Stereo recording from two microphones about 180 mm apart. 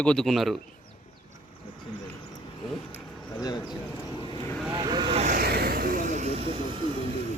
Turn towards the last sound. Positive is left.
turn(degrees=-30)  # may be behind; listen again after turning